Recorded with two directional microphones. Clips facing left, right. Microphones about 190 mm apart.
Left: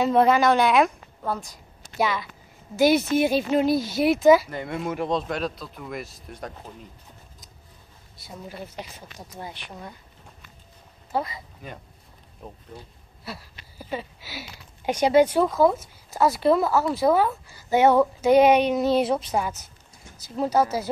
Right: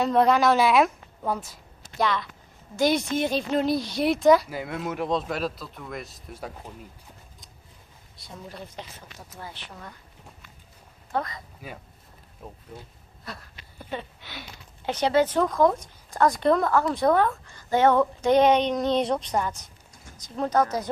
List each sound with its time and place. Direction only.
0.0 s speech: centre (ahead or behind)
2.0 s a woman's voice: 5° left (ahead or behind)
8.2 s speech: 5° left (ahead or behind)
11.1 s speech: 5° left (ahead or behind)